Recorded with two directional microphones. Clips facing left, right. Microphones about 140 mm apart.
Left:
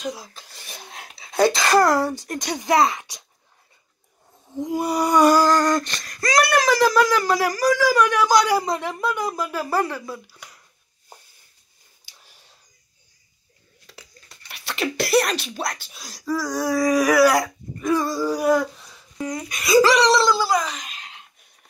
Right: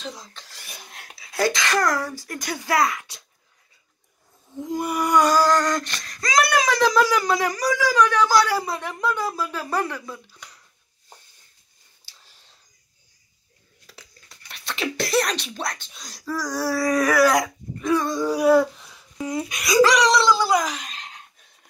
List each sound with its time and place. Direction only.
0.0 s speech: 10° left (ahead or behind)
1.4 s speech: 35° left (ahead or behind)
5.1 s speech: 15° left (ahead or behind)
12.1 s a sound: 15° left (ahead or behind)
13.8 s a sound: centre (ahead or behind)
16.3 s speech: 10° left (ahead or behind); by 20.8 s 5° right (ahead or behind)